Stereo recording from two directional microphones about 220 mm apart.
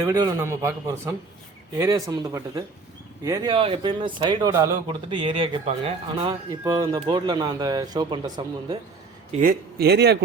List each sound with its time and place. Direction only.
0.0 s a man's voice: 15° right (ahead or behind)
9.4 s speech: 45° right (ahead or behind)